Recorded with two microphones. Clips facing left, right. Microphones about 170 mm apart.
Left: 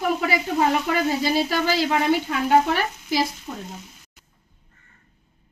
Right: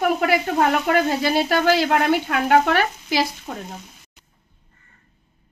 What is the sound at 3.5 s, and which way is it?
Speech, 60° right (ahead or behind).